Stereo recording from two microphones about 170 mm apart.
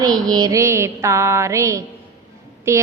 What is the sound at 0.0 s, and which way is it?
A woman's voice, 25° right (ahead or behind).